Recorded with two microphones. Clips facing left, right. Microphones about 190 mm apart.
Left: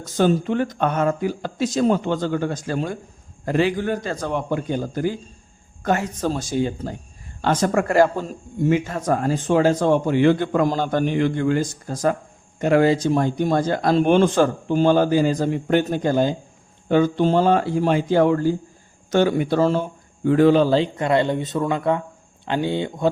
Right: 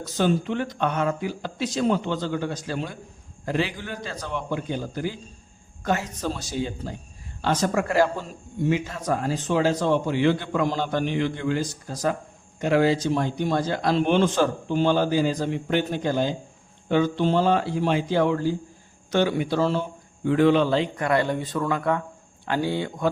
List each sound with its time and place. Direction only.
0.0 s speech: 50° left (ahead or behind); by 23.0 s 20° left (ahead or behind)